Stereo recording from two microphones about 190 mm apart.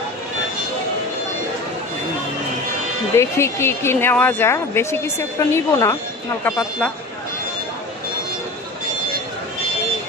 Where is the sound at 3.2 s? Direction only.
15° left (ahead or behind).